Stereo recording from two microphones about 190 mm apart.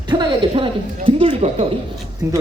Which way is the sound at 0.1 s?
25° right (ahead or behind).